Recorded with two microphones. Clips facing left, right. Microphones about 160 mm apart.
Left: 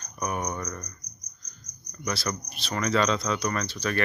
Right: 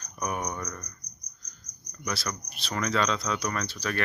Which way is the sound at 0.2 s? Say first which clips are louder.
Left 1 dB; centre (ahead or behind).